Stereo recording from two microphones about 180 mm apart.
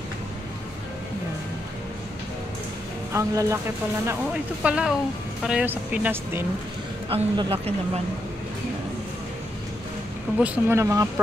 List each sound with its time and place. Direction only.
3.1 s speech: 15° right (ahead or behind)
4.6 s speech: 5° right (ahead or behind)
7.1 s speech: 30° right (ahead or behind)
10.4 s speech: 10° right (ahead or behind)